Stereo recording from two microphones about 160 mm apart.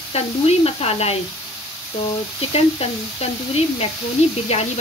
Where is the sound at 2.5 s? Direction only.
40° left (ahead or behind).